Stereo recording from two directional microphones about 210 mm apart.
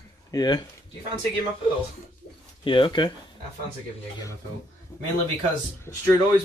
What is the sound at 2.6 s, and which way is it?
Speech, 25° left (ahead or behind).